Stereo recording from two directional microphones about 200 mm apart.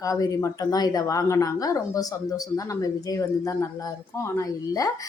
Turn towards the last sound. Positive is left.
turn(degrees=15)  # may be behind; listen again after turning